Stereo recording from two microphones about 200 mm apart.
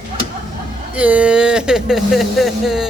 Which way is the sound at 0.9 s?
5° right (ahead or behind).